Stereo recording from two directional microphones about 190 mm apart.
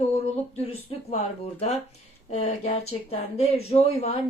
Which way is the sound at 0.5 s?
30° left (ahead or behind).